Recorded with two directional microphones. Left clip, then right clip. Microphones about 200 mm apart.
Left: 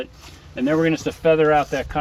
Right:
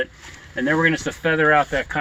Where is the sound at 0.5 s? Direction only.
15° right (ahead or behind).